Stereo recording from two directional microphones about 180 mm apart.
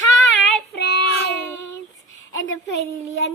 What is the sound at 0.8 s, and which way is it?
Child singing, 70° left (ahead or behind).